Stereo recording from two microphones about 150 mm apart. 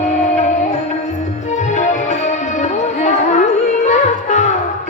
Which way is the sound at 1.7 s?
55° left (ahead or behind).